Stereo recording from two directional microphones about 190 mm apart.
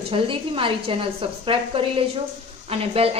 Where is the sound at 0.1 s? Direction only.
25° right (ahead or behind).